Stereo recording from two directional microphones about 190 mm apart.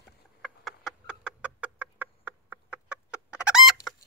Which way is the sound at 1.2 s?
5° right (ahead or behind).